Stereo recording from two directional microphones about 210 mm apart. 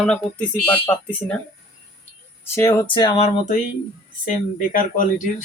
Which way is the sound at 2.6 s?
15° left (ahead or behind).